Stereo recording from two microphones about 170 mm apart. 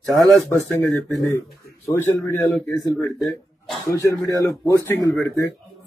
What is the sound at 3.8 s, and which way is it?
Speech, 20° left (ahead or behind).